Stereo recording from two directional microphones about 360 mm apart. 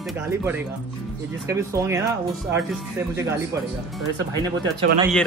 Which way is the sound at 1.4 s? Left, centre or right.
Centre.